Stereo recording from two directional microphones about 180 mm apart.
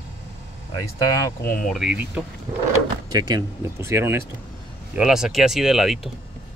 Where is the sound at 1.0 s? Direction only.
15° left (ahead or behind).